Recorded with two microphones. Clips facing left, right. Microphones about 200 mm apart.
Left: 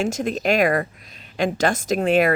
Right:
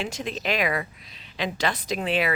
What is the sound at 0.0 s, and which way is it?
Speech, 45° left (ahead or behind).